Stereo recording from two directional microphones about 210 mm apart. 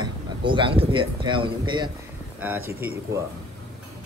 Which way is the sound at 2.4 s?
10° right (ahead or behind).